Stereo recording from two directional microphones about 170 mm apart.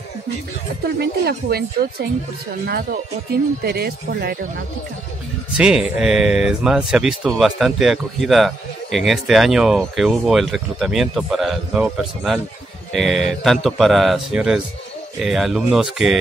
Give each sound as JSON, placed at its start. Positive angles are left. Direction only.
{"t": 0.8, "sound": "speech", "side_deg": -70}
{"t": 5.6, "sound": "speech", "side_deg": -5}